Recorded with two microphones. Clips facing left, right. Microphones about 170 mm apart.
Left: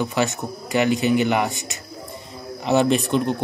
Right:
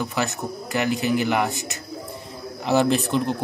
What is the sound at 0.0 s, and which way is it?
Speech, centre (ahead or behind).